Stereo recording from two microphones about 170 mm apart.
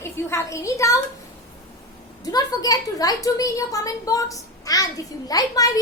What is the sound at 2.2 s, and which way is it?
A woman's voice, 20° left (ahead or behind).